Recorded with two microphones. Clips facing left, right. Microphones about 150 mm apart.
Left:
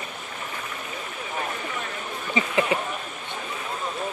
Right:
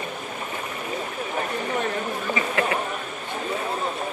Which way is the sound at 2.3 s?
20° left (ahead or behind).